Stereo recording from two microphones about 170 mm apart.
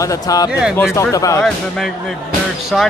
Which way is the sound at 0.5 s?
5° right (ahead or behind).